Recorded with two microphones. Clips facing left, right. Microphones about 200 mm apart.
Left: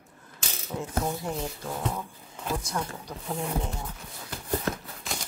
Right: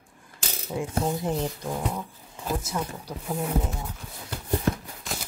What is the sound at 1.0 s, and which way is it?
Speech, 20° right (ahead or behind).